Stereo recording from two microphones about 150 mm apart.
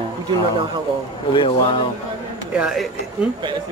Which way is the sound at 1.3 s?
35° left (ahead or behind).